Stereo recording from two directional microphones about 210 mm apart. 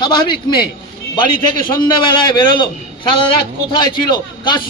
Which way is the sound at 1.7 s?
20° left (ahead or behind).